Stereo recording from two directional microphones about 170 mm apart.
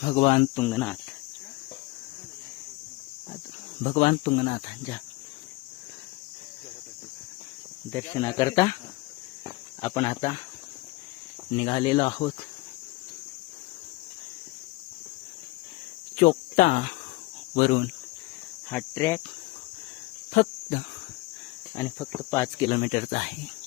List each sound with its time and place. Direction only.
0.0 s speech: 40° left (ahead or behind)
0.7 s speech: 5° left (ahead or behind)
3.8 s speech: 45° left (ahead or behind)
7.9 s speech: 15° left (ahead or behind)
9.8 s speech: 25° left (ahead or behind)
11.7 s speech: 30° left (ahead or behind)
16.1 s cricket: 50° left (ahead or behind)
17.5 s speech: 65° left (ahead or behind)
18.7 s speech: 15° left (ahead or behind)
20.3 s cricket: 45° left (ahead or behind)
21.8 s speech: 15° left (ahead or behind)
22.5 s speech: 30° left (ahead or behind)
22.8 s speech: 50° left (ahead or behind)